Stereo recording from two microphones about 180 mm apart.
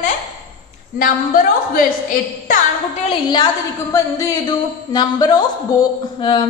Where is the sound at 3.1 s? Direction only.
25° left (ahead or behind).